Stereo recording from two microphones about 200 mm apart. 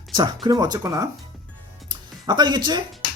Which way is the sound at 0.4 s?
20° right (ahead or behind).